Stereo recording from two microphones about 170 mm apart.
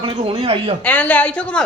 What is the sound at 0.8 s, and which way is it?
Speech, 10° left (ahead or behind).